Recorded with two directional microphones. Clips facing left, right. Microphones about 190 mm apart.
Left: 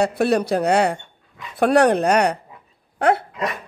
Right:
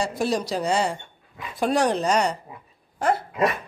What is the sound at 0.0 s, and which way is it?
Speech, 65° left (ahead or behind).